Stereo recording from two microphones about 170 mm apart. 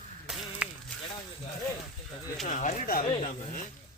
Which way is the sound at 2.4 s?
45° left (ahead or behind).